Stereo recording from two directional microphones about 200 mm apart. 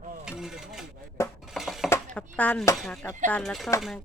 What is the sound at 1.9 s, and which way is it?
Speech, 5° left (ahead or behind).